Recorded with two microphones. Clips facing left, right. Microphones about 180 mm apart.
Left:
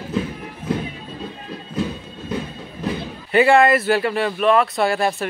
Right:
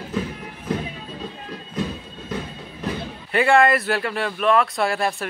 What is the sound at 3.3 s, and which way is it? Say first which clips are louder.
Speech: left 3 dB; centre (ahead or behind).